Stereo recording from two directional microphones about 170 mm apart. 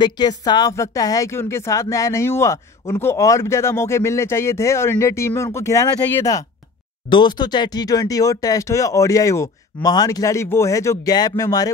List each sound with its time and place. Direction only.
0.0 s a woman's voice: 25° left (ahead or behind)